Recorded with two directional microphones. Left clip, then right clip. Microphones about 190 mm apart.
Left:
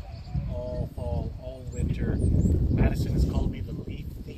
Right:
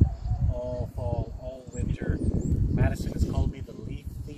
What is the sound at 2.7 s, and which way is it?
Speech, 5° right (ahead or behind).